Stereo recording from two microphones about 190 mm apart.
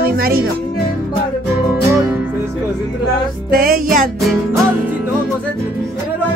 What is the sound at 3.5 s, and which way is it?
Speech, 50° right (ahead or behind).